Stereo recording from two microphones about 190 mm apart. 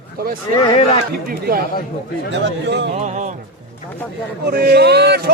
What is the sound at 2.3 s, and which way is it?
Speech, 65° right (ahead or behind).